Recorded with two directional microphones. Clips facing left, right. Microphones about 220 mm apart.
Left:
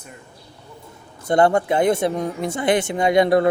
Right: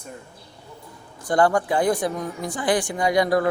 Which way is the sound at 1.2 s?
25° left (ahead or behind).